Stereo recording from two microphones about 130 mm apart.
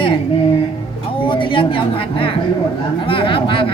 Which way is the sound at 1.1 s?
40° left (ahead or behind).